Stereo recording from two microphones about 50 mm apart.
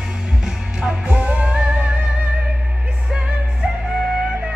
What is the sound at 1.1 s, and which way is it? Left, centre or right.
Music, right.